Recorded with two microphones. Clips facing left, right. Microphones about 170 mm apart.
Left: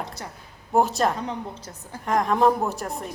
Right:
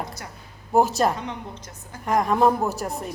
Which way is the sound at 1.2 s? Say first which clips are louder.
Left 2 dB; 35° left (ahead or behind).